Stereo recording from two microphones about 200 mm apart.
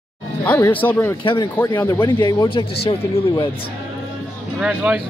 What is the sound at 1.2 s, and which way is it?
Speech, 25° left (ahead or behind).